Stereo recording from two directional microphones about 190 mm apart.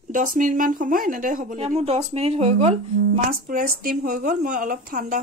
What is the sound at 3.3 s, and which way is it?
Speech, 45° right (ahead or behind).